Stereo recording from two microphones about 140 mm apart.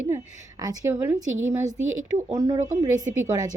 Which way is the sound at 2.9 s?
30° right (ahead or behind).